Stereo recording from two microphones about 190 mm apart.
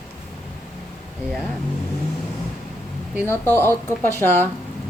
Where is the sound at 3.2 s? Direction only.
15° left (ahead or behind).